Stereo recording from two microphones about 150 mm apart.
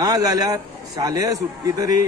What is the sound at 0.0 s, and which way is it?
A man's voice, 25° right (ahead or behind).